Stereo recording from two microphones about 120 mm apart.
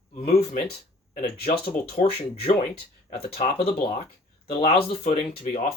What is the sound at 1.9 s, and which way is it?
Speech, 50° left (ahead or behind).